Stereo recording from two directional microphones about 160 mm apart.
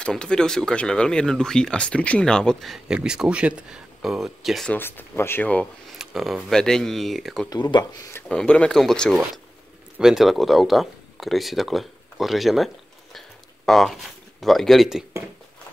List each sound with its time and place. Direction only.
0.0 s speech: 5° left (ahead or behind)
4.7 s speech: 15° left (ahead or behind)
5.9 s speech: centre (ahead or behind)
7.4 s speech: 25° left (ahead or behind)
8.3 s speech: 5° left (ahead or behind)